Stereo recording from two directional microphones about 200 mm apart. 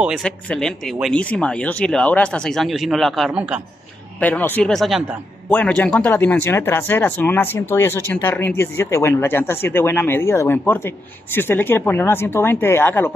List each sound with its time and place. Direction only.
0.0 s speech: 5° right (ahead or behind)
4.2 s speech: 10° left (ahead or behind)